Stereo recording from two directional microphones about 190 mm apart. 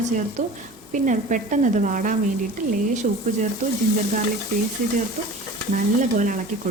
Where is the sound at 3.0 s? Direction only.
45° right (ahead or behind).